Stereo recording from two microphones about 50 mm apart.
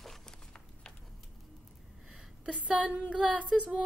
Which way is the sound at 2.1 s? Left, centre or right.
Right.